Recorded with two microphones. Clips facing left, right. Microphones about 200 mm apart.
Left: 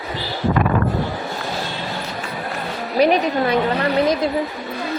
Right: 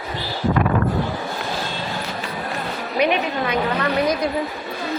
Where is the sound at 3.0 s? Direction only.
35° left (ahead or behind).